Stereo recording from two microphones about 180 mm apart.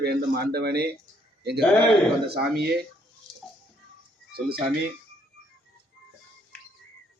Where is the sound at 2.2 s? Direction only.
60° right (ahead or behind).